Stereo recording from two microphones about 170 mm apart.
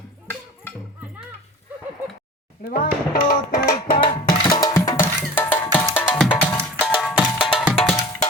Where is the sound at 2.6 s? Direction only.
60° left (ahead or behind).